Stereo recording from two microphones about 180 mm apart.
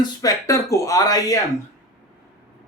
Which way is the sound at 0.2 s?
20° left (ahead or behind).